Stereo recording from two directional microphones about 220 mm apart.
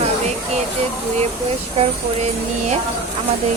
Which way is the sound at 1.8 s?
30° right (ahead or behind).